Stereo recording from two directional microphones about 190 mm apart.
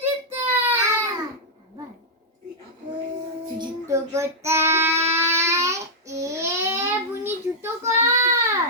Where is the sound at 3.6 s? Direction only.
15° right (ahead or behind).